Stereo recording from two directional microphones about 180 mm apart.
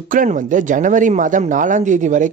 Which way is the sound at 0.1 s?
45° right (ahead or behind).